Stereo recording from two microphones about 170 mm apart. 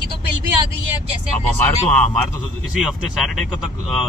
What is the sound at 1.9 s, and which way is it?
Speech, 5° left (ahead or behind).